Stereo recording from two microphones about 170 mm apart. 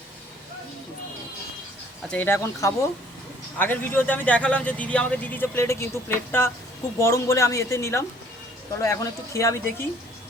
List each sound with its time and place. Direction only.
2.0 s speech: 10° left (ahead or behind)